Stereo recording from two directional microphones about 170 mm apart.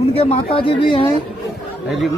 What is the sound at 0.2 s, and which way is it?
Speech, 35° left (ahead or behind).